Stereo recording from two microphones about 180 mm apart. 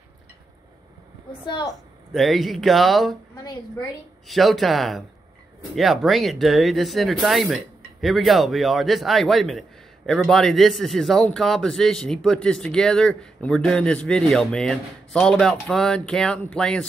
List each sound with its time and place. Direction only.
1.4 s a woman's voice: 25° left (ahead or behind)
2.1 s speech: centre (ahead or behind)
4.3 s speech: centre (ahead or behind)